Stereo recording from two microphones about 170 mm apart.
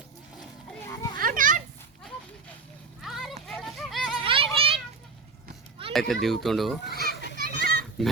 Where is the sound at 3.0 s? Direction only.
Centre (ahead or behind).